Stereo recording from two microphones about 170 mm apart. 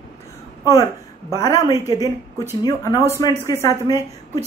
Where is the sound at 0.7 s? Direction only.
20° left (ahead or behind).